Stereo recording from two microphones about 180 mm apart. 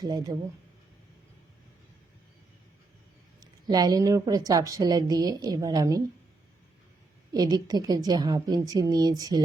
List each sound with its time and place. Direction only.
0.0 s a woman's voice: 20° right (ahead or behind)
3.4 s a woman's voice: 20° right (ahead or behind)
7.3 s a woman's voice: 20° right (ahead or behind)